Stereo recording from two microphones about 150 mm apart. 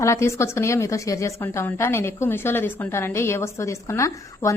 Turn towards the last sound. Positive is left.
turn(degrees=20)  # may be behind; listen again after turning